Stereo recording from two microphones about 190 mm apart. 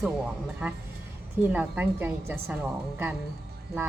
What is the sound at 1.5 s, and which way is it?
Speech, 10° right (ahead or behind).